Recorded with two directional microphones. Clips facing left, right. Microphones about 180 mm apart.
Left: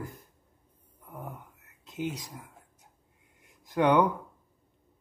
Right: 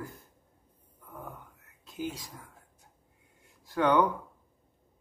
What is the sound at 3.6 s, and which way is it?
Speech, 15° left (ahead or behind).